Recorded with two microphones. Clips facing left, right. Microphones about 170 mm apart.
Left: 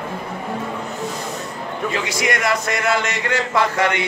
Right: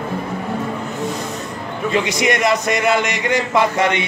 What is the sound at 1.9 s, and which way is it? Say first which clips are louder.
Speech: right 6 dB; 20° right (ahead or behind).